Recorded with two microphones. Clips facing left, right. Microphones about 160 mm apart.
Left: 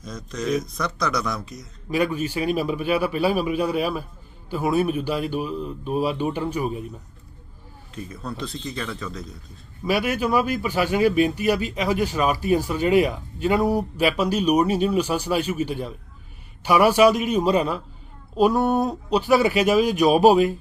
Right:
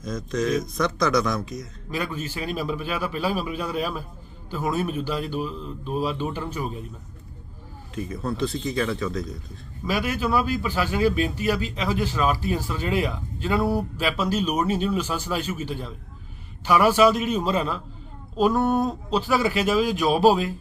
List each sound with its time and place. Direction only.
0.3 s speech: centre (ahead or behind)
1.9 s speech: 15° left (ahead or behind)
7.9 s speech: centre (ahead or behind)
9.8 s speech: 15° left (ahead or behind)